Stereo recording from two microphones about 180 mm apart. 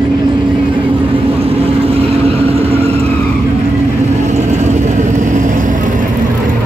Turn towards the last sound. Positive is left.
turn(degrees=-45)  # may be behind; listen again after turning